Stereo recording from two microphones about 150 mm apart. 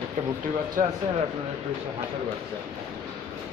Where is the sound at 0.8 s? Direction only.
65° right (ahead or behind).